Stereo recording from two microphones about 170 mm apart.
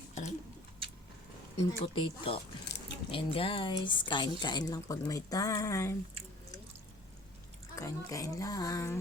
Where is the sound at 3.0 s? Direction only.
30° left (ahead or behind).